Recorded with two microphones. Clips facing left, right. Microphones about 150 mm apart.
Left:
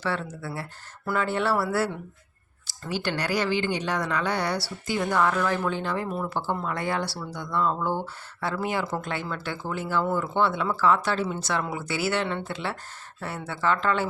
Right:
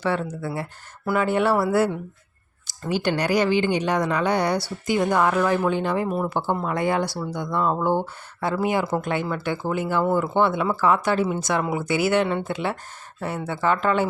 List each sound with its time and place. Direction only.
0.0 s speech: 15° right (ahead or behind)